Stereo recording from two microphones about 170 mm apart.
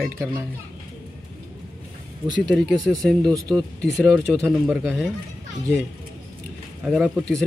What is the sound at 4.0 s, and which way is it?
Speech, centre (ahead or behind).